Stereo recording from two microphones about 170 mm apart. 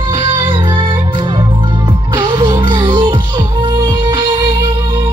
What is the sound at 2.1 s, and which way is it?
Music, 25° right (ahead or behind).